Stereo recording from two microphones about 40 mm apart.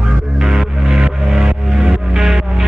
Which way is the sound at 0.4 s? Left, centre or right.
Centre.